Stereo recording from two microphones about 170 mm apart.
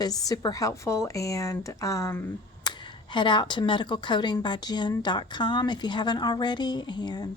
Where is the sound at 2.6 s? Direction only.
25° left (ahead or behind).